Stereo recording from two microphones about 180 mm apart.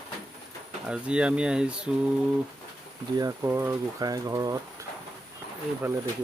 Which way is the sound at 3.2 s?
15° right (ahead or behind).